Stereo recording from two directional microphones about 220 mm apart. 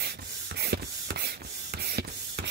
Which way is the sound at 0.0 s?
50° right (ahead or behind).